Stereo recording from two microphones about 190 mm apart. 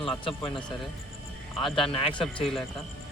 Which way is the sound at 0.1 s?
25° left (ahead or behind).